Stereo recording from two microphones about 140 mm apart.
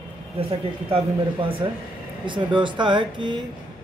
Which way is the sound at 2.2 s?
35° right (ahead or behind).